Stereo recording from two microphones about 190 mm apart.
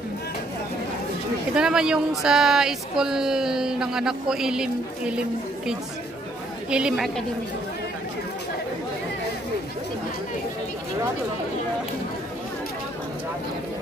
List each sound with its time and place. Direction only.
1.5 s speech: 5° right (ahead or behind)
6.7 s speech: 5° right (ahead or behind)